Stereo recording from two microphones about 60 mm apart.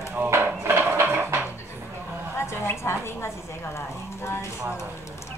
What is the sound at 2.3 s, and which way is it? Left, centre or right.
A woman's voice, left.